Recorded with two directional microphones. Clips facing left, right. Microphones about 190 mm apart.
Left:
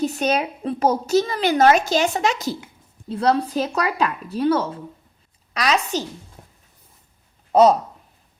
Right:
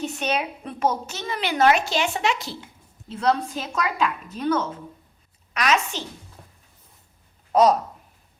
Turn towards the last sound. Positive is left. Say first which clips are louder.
# left 3 dB
turn(degrees=30)  # may be behind; listen again after turning